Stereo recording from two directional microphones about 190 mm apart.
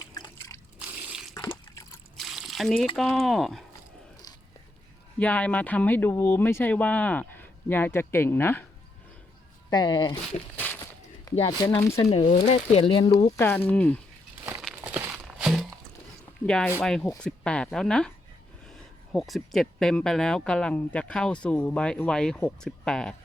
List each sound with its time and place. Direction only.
0.1 s liquid: 20° left (ahead or behind)
0.8 s drip: 10° right (ahead or behind)
1.3 s liquid: 15° left (ahead or behind)
2.1 s a sound: centre (ahead or behind)
2.9 s speech: centre (ahead or behind)
5.2 s speech: 5° left (ahead or behind)
9.6 s speech: 20° left (ahead or behind)
10.6 s a sound: 10° left (ahead or behind)
11.4 s speech: 20° left (ahead or behind)
12.0 s speech: 35° left (ahead or behind)
13.3 s speech: 10° left (ahead or behind)
14.8 s a sound: 10° right (ahead or behind)
16.5 s speech: 5° left (ahead or behind)